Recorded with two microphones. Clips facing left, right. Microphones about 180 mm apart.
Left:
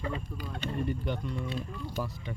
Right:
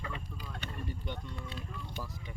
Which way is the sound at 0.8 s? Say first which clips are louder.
Left 8 dB; 70° left (ahead or behind).